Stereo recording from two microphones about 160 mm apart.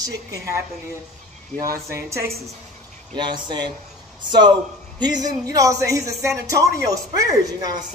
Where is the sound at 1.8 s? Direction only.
20° right (ahead or behind).